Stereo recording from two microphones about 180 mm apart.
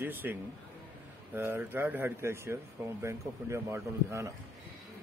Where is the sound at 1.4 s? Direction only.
10° right (ahead or behind).